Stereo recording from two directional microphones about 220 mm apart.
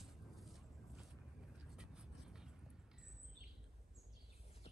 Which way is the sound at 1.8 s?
5° right (ahead or behind).